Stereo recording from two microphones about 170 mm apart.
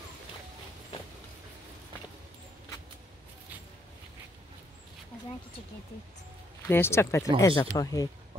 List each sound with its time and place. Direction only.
6.7 s speech: 15° left (ahead or behind)